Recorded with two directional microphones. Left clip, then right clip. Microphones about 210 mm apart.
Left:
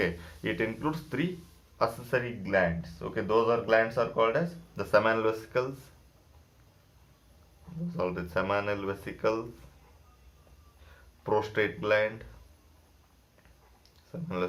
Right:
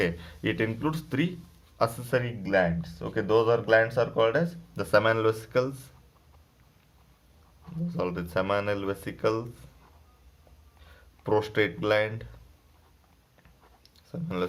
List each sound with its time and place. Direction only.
0.0 s speech: 40° right (ahead or behind)
7.9 s speech: 35° right (ahead or behind)
11.2 s speech: 35° right (ahead or behind)
14.1 s speech: 35° right (ahead or behind)